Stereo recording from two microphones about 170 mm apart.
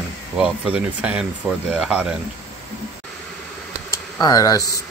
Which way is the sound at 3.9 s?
20° left (ahead or behind).